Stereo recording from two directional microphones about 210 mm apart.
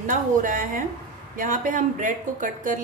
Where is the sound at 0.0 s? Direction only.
40° right (ahead or behind).